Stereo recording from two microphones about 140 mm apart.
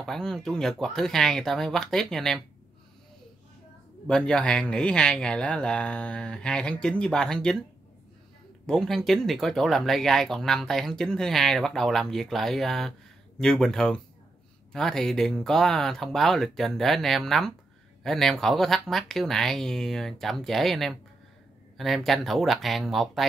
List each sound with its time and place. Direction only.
0.0 s speech: 5° left (ahead or behind)
4.1 s speech: 5° left (ahead or behind)
8.6 s speech: 5° left (ahead or behind)